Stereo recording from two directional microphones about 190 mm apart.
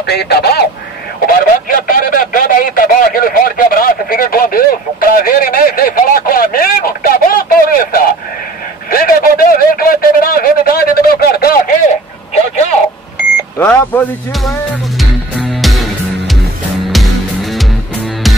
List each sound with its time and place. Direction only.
0.0 s speech: 60° left (ahead or behind)
8.9 s a sound: 50° left (ahead or behind)
13.6 s speech: 10° left (ahead or behind)
15.0 s music: centre (ahead or behind)